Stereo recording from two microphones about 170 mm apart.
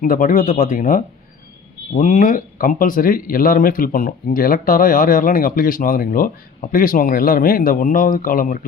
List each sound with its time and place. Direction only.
0.0 s speech: 55° left (ahead or behind)